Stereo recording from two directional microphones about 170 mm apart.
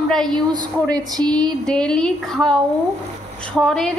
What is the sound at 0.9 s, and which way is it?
Speech, 25° right (ahead or behind).